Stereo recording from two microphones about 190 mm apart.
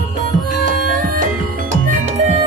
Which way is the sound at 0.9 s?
45° right (ahead or behind).